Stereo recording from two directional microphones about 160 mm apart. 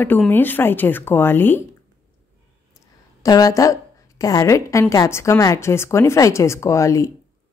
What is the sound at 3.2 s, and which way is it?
A woman's voice, 20° left (ahead or behind).